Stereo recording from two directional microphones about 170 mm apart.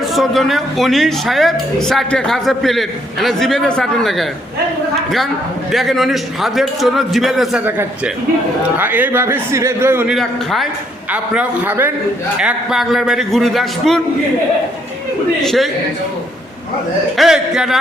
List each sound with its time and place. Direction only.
0.1 s a woman's voice: centre (ahead or behind)
5.7 s a woman's voice: centre (ahead or behind)
10.2 s a woman's voice: centre (ahead or behind)
15.4 s a woman's voice: centre (ahead or behind)
17.2 s a woman's voice: 5° right (ahead or behind)